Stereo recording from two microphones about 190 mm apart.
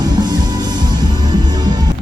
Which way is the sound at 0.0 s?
20° right (ahead or behind).